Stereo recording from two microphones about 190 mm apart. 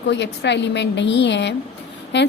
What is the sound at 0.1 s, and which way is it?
A woman's voice, 65° left (ahead or behind).